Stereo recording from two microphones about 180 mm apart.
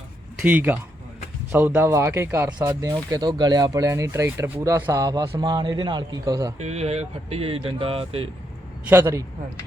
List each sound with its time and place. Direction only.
0.4 s speech: 10° right (ahead or behind)
6.6 s speech: 35° right (ahead or behind)
8.9 s speech: 15° right (ahead or behind)